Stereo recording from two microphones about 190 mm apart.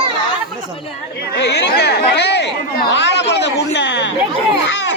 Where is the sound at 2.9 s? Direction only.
65° left (ahead or behind).